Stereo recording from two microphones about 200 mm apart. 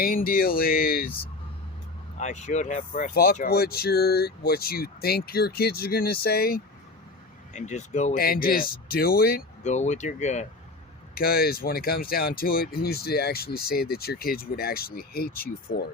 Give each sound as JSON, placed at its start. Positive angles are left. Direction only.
{"t": 0.0, "sound": "speech", "side_deg": 45}
{"t": 2.1, "sound": "speech", "side_deg": 35}
{"t": 7.5, "sound": "speech", "side_deg": 35}
{"t": 11.1, "sound": "speech", "side_deg": 45}